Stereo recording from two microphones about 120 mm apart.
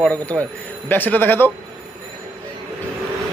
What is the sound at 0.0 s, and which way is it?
Speech, 10° left (ahead or behind).